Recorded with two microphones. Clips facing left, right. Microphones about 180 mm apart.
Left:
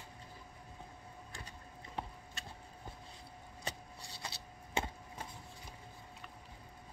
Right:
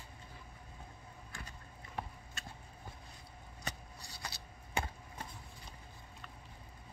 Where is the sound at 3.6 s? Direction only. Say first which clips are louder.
Left 1 dB; 25° left (ahead or behind).